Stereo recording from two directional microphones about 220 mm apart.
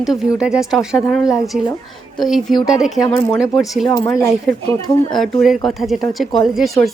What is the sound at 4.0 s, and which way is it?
Speech, 15° left (ahead or behind).